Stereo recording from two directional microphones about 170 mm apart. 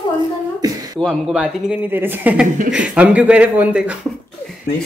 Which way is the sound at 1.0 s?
Centre (ahead or behind).